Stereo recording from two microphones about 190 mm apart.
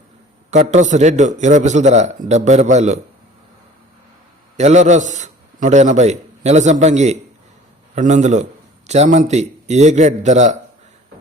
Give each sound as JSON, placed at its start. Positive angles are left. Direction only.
{"t": 0.5, "sound": "a man's voice", "side_deg": -40}
{"t": 4.5, "sound": "a man's voice", "side_deg": -35}